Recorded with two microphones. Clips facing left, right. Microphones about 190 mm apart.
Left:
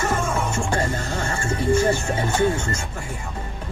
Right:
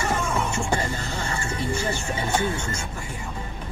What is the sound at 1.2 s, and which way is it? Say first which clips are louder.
Speech: left 7 dB; 50° left (ahead or behind).